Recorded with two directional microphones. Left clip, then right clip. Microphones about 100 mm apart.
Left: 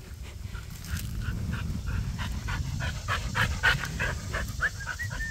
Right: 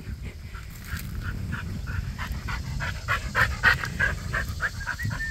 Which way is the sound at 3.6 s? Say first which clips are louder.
Right 3 dB; 25° left (ahead or behind).